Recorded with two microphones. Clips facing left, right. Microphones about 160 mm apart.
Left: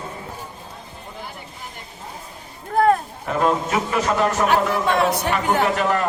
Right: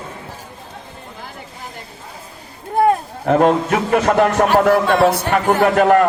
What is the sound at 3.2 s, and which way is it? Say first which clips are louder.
A man's voice: right 8 dB; 55° right (ahead or behind).